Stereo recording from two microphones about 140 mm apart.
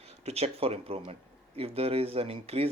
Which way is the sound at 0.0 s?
50° right (ahead or behind).